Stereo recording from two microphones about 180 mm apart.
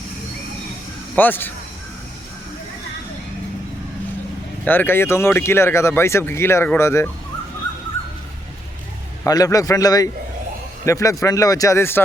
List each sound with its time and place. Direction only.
1.1 s speech: 10° left (ahead or behind)
4.6 s speech: 10° left (ahead or behind)
9.2 s a man's voice: 20° left (ahead or behind)